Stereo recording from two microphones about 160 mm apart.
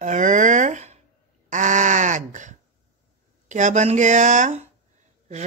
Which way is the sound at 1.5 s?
50° right (ahead or behind).